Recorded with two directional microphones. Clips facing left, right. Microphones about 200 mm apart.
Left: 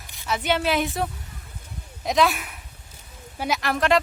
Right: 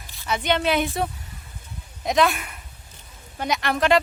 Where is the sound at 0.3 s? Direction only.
5° left (ahead or behind).